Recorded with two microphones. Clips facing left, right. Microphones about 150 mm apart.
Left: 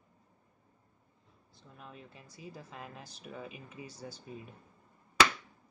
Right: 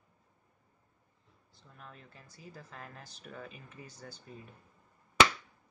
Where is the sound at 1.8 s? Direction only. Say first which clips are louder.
Left 2 dB; 15° left (ahead or behind).